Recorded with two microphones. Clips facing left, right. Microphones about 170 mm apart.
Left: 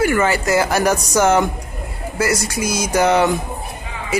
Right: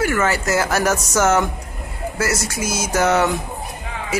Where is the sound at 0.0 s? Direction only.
10° left (ahead or behind).